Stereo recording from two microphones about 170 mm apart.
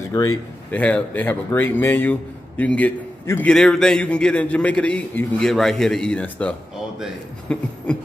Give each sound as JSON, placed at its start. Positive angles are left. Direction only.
{"t": 0.1, "sound": "a man's voice", "side_deg": 20}
{"t": 0.7, "sound": "a man's voice", "side_deg": 10}